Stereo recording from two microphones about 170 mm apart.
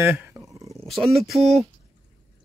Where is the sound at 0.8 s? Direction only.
Centre (ahead or behind).